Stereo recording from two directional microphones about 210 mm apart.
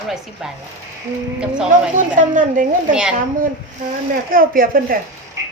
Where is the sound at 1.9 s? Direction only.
40° right (ahead or behind).